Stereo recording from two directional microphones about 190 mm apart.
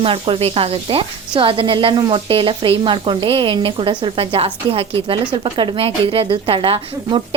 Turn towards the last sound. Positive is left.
turn(degrees=-30)  # may be behind; listen again after turning